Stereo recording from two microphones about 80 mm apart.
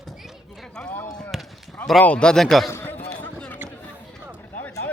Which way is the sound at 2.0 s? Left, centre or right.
Centre.